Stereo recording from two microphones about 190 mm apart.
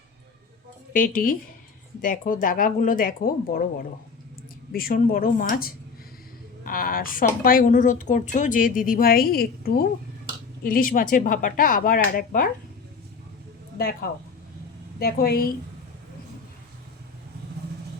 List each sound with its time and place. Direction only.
0.9 s a woman's voice: 45° left (ahead or behind)
4.7 s a woman's voice: 50° left (ahead or behind)
14.9 s a woman's voice: 55° left (ahead or behind)